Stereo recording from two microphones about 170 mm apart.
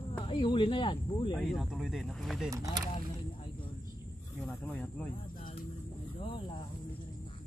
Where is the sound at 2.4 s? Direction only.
20° right (ahead or behind).